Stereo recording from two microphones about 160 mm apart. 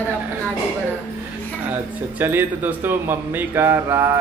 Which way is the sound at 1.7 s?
10° right (ahead or behind).